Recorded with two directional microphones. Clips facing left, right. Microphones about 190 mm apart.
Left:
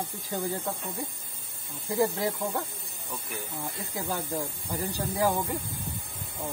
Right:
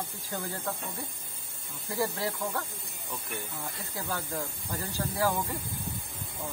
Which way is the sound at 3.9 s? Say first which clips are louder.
Left 3 dB; 15° left (ahead or behind).